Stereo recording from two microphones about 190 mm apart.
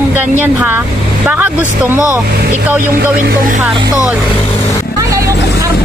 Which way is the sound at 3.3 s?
45° right (ahead or behind).